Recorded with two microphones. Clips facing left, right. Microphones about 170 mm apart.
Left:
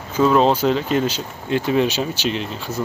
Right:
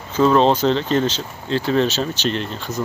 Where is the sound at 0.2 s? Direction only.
5° left (ahead or behind).